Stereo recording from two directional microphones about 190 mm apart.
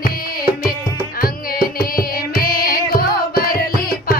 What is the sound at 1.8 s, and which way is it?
Carnatic music, 50° left (ahead or behind).